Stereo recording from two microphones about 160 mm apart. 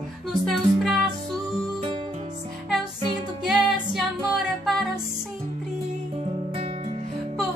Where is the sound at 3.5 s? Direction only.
5° right (ahead or behind).